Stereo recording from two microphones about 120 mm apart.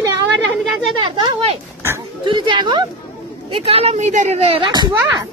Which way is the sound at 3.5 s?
55° right (ahead or behind).